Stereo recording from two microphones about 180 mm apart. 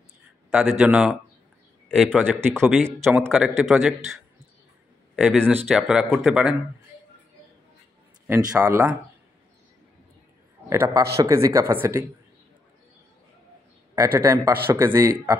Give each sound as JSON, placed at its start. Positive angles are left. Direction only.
{"t": 0.5, "sound": "speech", "side_deg": -5}
{"t": 5.1, "sound": "speech", "side_deg": -5}
{"t": 8.3, "sound": "speech", "side_deg": -20}
{"t": 11.1, "sound": "speech", "side_deg": -15}
{"t": 13.9, "sound": "speech", "side_deg": -15}